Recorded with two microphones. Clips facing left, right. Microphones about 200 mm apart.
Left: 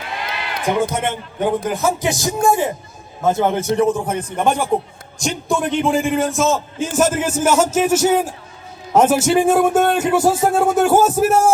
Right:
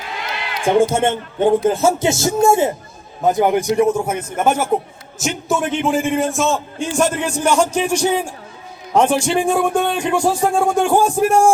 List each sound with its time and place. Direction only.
0.6 s a man's voice: 30° right (ahead or behind); by 11.5 s 5° left (ahead or behind)